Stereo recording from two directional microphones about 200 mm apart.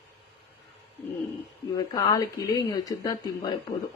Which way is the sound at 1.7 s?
20° left (ahead or behind).